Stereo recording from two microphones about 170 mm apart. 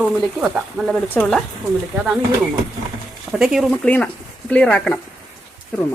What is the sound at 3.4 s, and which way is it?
Speech, centre (ahead or behind).